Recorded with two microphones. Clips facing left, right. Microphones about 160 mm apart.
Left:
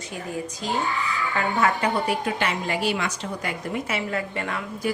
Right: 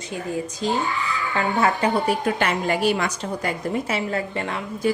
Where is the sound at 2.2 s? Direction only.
50° right (ahead or behind).